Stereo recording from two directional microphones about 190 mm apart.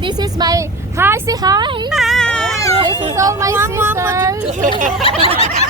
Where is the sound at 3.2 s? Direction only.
15° right (ahead or behind).